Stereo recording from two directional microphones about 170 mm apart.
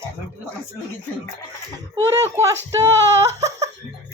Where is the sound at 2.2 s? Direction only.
15° right (ahead or behind).